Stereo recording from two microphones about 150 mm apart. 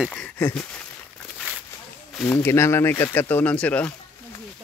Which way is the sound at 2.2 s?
15° left (ahead or behind).